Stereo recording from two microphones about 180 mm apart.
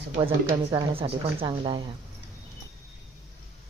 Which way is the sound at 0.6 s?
25° right (ahead or behind).